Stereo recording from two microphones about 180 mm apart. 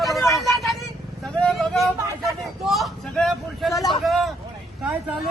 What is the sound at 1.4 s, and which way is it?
Vehicle, centre (ahead or behind).